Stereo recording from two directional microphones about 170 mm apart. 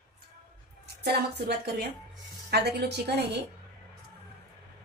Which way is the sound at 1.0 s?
70° right (ahead or behind).